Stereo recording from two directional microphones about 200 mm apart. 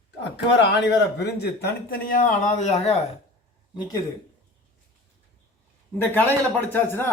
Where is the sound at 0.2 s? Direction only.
60° left (ahead or behind); by 3.0 s 30° left (ahead or behind).